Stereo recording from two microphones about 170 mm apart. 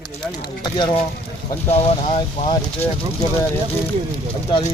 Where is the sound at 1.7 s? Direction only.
35° left (ahead or behind).